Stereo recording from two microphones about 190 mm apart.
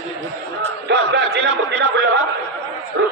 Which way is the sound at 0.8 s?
65° right (ahead or behind).